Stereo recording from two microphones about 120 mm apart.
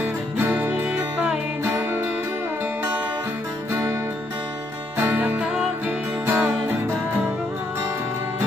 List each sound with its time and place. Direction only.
0.0 s music: 15° right (ahead or behind)
4.9 s music: 15° right (ahead or behind)